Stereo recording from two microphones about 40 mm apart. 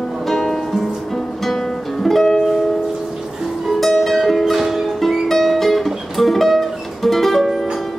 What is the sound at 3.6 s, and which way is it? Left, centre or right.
Music, centre.